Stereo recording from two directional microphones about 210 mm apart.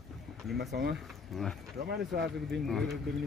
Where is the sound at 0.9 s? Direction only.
Centre (ahead or behind).